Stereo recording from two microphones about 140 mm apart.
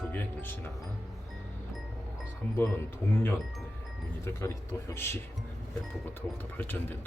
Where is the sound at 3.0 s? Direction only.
20° left (ahead or behind).